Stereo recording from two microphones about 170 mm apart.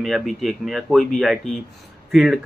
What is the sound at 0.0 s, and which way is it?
Speech, centre (ahead or behind).